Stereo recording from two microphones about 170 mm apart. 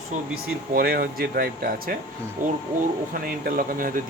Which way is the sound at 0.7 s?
65° right (ahead or behind).